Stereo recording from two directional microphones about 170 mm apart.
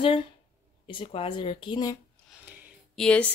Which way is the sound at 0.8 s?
30° left (ahead or behind).